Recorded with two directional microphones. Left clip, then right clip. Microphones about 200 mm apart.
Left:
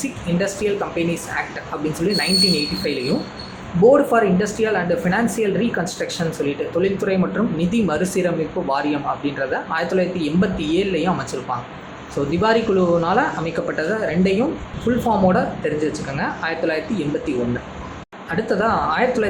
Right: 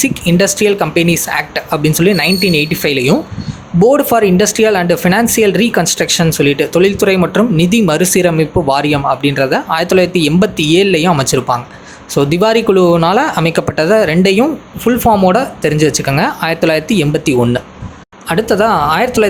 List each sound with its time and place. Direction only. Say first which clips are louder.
0.0 s speech: right 11 dB; 45° right (ahead or behind)
18.3 s speech: right 8 dB; 45° right (ahead or behind)